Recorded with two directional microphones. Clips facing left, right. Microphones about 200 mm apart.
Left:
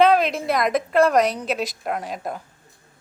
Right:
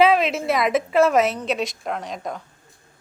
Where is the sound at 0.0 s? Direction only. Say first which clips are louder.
Even; centre (ahead or behind).